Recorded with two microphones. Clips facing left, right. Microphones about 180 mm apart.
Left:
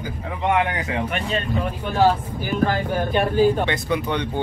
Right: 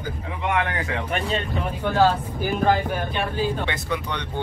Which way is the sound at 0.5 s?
20° left (ahead or behind).